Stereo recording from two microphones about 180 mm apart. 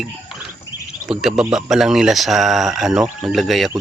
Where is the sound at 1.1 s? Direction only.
5° right (ahead or behind).